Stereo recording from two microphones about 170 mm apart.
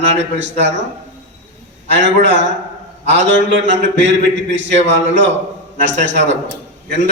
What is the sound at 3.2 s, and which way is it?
A man's voice, 90° right.